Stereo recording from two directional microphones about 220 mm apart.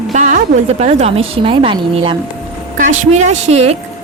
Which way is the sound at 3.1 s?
30° right (ahead or behind).